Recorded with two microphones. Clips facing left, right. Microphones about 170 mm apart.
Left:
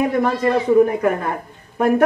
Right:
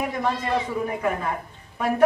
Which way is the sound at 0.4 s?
55° left (ahead or behind).